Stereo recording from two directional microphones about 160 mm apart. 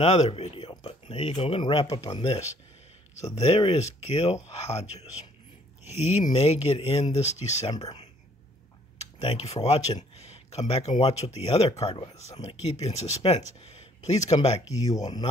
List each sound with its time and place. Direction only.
0.0 s speech: 40° left (ahead or behind)
9.2 s speech: 40° left (ahead or behind)
14.7 s speech: 20° left (ahead or behind)